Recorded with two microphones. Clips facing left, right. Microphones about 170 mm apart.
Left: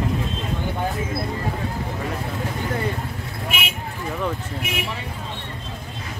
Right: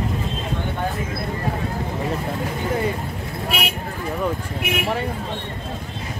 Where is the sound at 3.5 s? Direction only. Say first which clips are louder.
Right 4 dB; 40° right (ahead or behind).